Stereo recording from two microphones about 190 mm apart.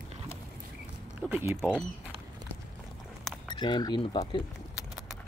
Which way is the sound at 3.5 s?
25° left (ahead or behind).